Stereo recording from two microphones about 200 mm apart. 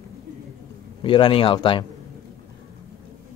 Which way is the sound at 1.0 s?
25° left (ahead or behind).